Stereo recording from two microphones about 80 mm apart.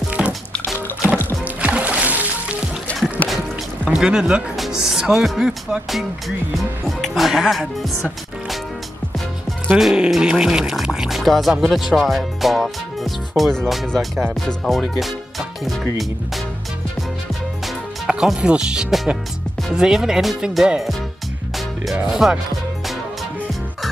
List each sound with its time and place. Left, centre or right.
0.2 s music: centre
2.9 s music: centre
3.9 s speech: centre
9.8 s speech: centre
18.0 s speech: centre
21.9 s speech: centre